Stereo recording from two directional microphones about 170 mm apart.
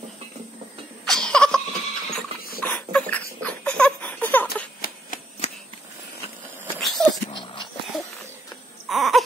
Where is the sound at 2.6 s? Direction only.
10° left (ahead or behind).